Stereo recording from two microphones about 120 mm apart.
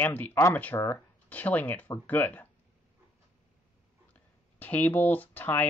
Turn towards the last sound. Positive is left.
turn(degrees=15)  # may be behind; listen again after turning